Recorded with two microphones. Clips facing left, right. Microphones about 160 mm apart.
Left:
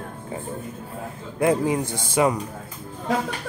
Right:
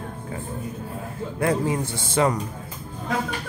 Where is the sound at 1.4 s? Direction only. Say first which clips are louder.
Left 3 dB; 20° left (ahead or behind).